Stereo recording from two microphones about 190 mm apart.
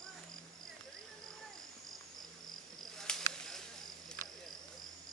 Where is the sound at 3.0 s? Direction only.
5° left (ahead or behind).